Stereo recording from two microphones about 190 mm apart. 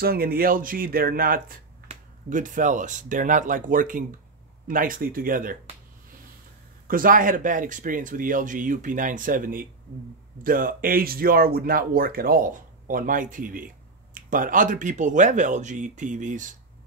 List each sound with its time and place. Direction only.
0.0 s speech: 50° right (ahead or behind)
6.9 s speech: 45° right (ahead or behind)